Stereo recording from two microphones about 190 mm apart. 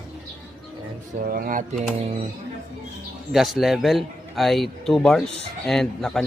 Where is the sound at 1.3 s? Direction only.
45° right (ahead or behind).